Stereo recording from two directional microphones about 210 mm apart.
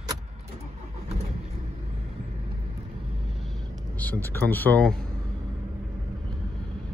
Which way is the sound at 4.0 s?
10° left (ahead or behind).